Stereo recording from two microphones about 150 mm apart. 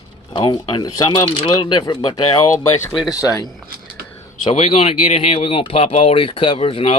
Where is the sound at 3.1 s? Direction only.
25° left (ahead or behind).